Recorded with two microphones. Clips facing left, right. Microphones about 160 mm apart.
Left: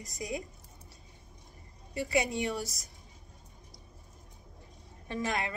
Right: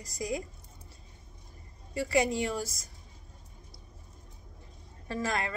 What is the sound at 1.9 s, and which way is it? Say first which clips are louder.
Speech: right 3 dB; 15° left (ahead or behind).